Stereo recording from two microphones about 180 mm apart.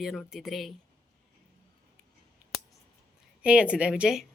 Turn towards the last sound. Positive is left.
turn(degrees=-5)  # may be behind; listen again after turning